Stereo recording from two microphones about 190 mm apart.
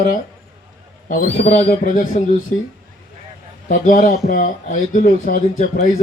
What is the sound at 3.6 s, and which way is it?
Speech, 45° left (ahead or behind).